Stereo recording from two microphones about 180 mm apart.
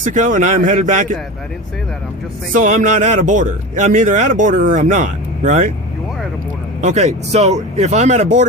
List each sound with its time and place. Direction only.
0.0 s a man's voice: 45° right (ahead or behind)
2.5 s a man's voice: 45° right (ahead or behind)
6.8 s speech: 40° right (ahead or behind)